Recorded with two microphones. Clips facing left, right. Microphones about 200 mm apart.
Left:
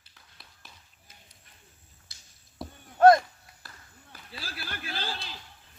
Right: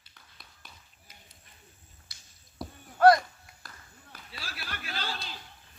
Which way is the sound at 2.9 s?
25° left (ahead or behind).